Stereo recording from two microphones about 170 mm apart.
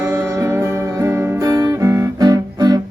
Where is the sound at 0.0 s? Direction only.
15° right (ahead or behind).